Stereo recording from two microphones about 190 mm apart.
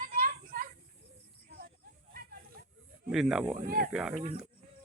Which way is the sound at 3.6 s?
50° right (ahead or behind).